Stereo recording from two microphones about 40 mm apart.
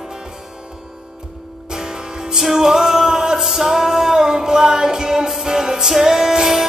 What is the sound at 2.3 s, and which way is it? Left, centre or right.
Music, centre.